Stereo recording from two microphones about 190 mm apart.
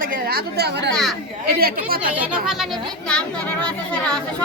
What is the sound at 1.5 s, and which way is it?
Speech, 55° right (ahead or behind).